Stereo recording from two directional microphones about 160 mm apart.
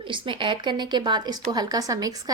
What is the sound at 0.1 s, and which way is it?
Speech, 30° right (ahead or behind).